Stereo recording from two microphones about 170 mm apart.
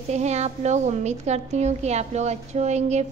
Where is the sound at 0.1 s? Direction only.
40° right (ahead or behind).